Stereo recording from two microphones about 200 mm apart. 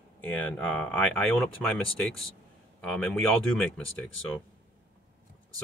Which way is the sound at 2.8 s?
5° left (ahead or behind).